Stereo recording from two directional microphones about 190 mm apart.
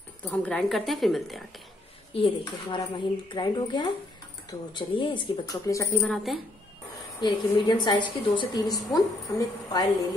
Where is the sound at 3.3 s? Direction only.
25° left (ahead or behind).